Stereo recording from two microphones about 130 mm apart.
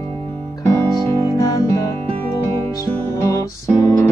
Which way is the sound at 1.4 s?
30° left (ahead or behind).